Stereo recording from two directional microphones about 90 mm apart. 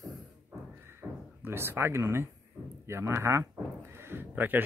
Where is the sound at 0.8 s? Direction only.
25° right (ahead or behind).